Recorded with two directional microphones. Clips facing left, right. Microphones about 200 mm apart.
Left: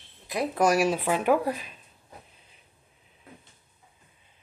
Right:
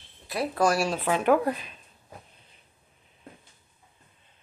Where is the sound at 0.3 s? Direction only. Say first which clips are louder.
Left 1 dB; 15° left (ahead or behind).